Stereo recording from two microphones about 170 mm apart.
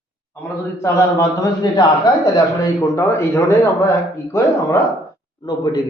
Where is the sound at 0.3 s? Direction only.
15° left (ahead or behind).